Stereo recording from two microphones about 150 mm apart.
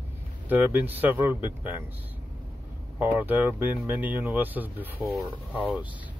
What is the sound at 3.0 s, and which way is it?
Speech, 10° right (ahead or behind).